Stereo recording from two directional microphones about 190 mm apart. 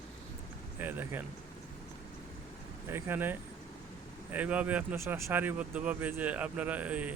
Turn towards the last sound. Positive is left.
turn(degrees=-10)  # may be behind; listen again after turning